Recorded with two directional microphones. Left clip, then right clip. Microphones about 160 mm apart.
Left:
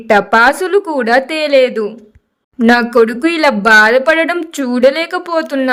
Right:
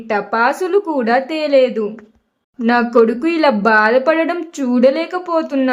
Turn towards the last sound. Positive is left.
turn(degrees=40)  # may be behind; listen again after turning